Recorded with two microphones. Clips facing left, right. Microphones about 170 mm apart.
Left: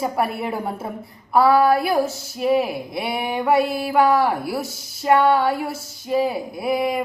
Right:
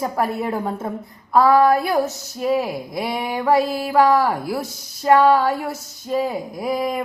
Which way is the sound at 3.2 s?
20° left (ahead or behind).